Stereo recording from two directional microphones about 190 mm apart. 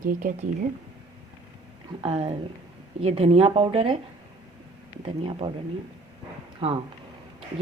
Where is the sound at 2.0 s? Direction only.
30° right (ahead or behind).